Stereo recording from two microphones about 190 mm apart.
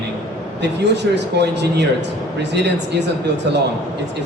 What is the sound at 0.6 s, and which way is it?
Speech, 65° right (ahead or behind).